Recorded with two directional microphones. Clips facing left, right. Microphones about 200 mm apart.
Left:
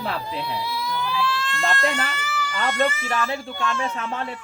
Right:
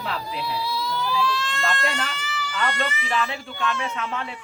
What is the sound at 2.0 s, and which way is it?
Baby cry, 5° left (ahead or behind).